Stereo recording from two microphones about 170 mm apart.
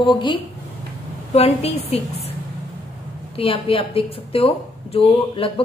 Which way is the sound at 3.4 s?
35° left (ahead or behind).